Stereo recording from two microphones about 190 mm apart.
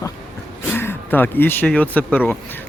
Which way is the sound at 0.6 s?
10° left (ahead or behind).